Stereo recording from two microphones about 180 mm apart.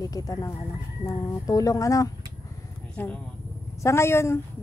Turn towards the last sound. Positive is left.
turn(degrees=15)  # may be behind; listen again after turning